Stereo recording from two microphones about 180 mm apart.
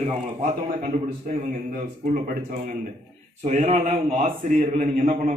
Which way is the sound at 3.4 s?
40° right (ahead or behind).